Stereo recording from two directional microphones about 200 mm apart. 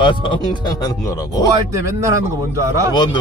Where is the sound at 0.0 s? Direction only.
25° left (ahead or behind).